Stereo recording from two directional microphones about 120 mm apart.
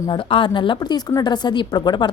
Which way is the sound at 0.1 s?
45° left (ahead or behind).